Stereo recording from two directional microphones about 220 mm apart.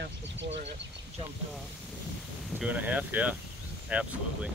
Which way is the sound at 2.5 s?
5° right (ahead or behind).